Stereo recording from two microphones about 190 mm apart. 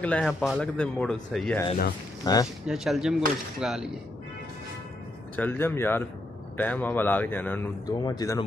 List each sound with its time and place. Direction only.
0.0 s speech: 5° left (ahead or behind)
2.3 s speech: 20° left (ahead or behind)
2.6 s speech: centre (ahead or behind)
5.3 s a man's voice: 10° left (ahead or behind)
7.8 s speech: 20° left (ahead or behind)